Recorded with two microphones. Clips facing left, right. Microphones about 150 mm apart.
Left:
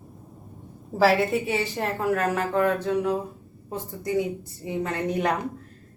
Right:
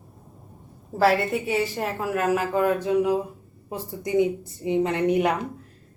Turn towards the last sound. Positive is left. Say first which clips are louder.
# right 4 dB
turn(degrees=-15)  # may be behind; listen again after turning